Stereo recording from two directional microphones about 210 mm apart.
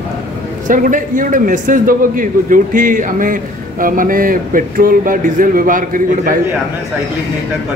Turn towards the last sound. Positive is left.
turn(degrees=-40)  # may be behind; listen again after turning